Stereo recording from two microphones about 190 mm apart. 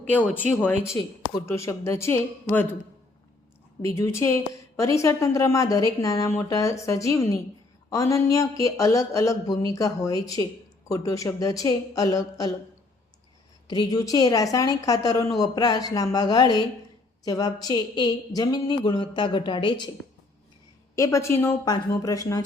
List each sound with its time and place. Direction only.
0.1 s speech: 10° left (ahead or behind)
3.9 s speech: 15° left (ahead or behind)
13.7 s a woman's voice: 20° left (ahead or behind)
20.9 s speech: 15° left (ahead or behind)